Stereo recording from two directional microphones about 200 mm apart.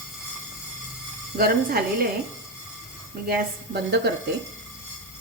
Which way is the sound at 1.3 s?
50° right (ahead or behind).